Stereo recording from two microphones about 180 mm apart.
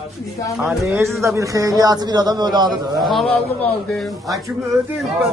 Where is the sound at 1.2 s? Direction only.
15° right (ahead or behind).